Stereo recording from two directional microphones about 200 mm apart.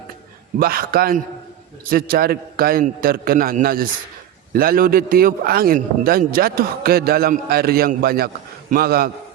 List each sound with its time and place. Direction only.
0.6 s a man's voice: 50° right (ahead or behind)